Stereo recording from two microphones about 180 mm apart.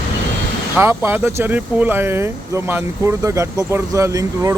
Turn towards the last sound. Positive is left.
turn(degrees=-20)  # may be behind; listen again after turning